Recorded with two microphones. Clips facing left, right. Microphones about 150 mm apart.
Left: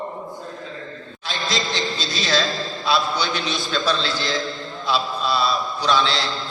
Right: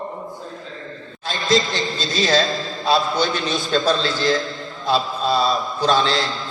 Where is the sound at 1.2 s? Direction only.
45° right (ahead or behind).